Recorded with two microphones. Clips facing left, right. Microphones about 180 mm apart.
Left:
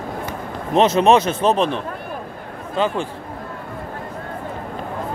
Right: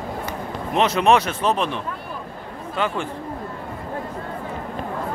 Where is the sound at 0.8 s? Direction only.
25° left (ahead or behind).